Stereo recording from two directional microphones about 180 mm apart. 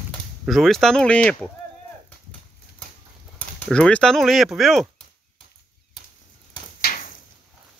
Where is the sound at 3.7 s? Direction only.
5° left (ahead or behind).